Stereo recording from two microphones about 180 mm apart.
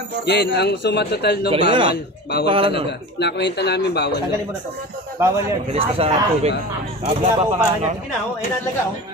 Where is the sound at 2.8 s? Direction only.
70° left (ahead or behind).